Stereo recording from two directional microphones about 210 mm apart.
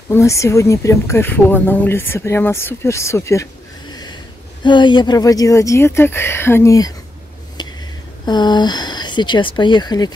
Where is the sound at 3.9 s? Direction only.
20° left (ahead or behind).